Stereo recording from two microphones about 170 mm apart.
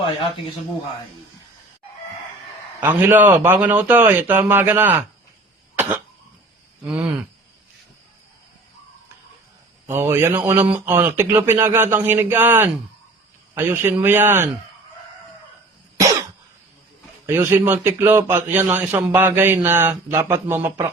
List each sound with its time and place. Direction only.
0.0 s speech: 30° left (ahead or behind)
2.8 s a man's voice: 10° right (ahead or behind)
6.8 s a man's voice: 5° right (ahead or behind)
9.8 s a man's voice: 15° right (ahead or behind)
17.2 s a man's voice: 15° right (ahead or behind)